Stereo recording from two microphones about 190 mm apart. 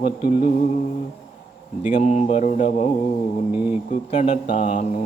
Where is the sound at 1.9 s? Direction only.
40° left (ahead or behind).